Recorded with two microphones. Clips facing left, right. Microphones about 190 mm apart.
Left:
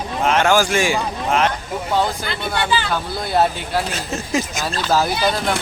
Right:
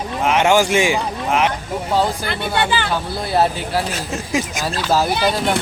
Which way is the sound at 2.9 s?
5° right (ahead or behind).